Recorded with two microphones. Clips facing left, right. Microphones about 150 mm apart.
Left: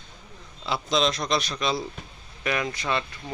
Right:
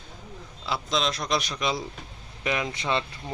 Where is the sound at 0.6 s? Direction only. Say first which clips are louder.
Left 3 dB; centre (ahead or behind).